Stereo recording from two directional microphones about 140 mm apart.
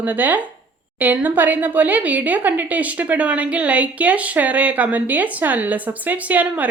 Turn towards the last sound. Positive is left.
turn(degrees=-10)  # may be behind; listen again after turning